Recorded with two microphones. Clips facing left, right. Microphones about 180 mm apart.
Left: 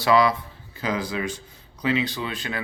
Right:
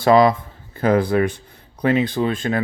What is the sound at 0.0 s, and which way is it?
Speech, 45° right (ahead or behind).